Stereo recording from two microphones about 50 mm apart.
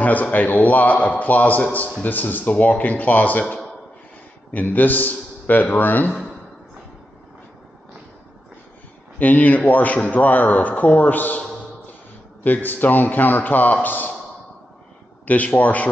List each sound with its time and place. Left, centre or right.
0.0 s a man's voice: left
4.6 s a man's voice: left
9.2 s a man's voice: left
12.4 s a man's voice: left
15.2 s a man's voice: left